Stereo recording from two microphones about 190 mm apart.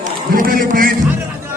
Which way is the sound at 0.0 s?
50° right (ahead or behind).